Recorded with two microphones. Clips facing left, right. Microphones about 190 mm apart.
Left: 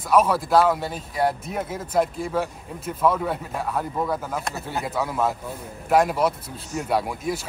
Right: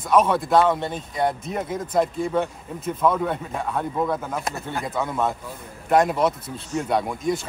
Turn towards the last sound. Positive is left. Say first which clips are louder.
# right 2 dB
turn(degrees=5)  # may be behind; listen again after turning